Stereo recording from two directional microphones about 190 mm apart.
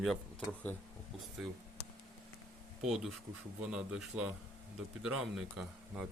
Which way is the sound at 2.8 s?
Centre (ahead or behind).